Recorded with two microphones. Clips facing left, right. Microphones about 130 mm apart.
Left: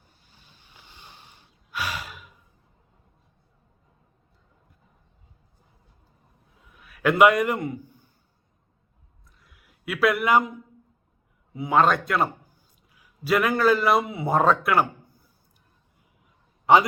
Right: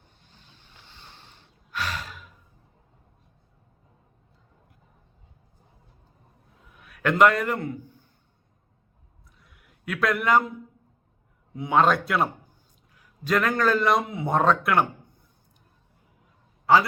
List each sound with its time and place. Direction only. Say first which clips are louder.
0.2 s snort: right 2 dB; 10° left (ahead or behind)
6.7 s a man's voice: left 3 dB; centre (ahead or behind)
9.4 s a sound: left 2 dB; centre (ahead or behind)
11.5 s a man's voice: even; centre (ahead or behind)
16.7 s a man's voice: left 2 dB; 20° left (ahead or behind)